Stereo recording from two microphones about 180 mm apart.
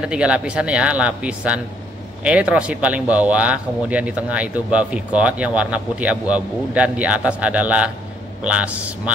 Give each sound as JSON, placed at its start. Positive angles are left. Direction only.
{"t": 0.0, "sound": "a man's voice", "side_deg": -5}